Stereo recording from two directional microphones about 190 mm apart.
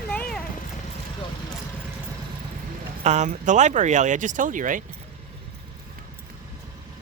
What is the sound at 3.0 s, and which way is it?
Speech, 40° right (ahead or behind).